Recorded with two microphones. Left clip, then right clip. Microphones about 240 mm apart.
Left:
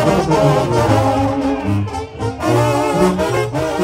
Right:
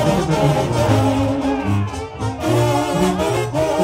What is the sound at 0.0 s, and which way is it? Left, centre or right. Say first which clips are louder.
Brass instrument: left 4 dB; left.